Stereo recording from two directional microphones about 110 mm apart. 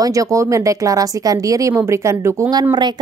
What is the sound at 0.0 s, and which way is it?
A woman's voice, 30° right (ahead or behind).